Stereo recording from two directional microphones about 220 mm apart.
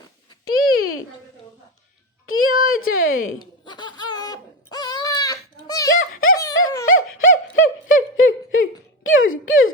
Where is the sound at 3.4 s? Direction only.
20° left (ahead or behind).